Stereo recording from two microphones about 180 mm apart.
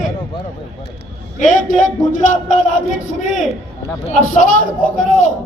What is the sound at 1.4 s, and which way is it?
A man's voice, 45° left (ahead or behind).